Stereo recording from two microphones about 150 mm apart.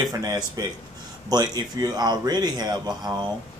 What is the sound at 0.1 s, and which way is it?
A man's voice, 25° right (ahead or behind).